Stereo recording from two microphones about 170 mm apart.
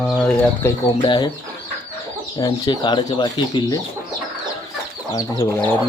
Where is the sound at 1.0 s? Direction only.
25° left (ahead or behind).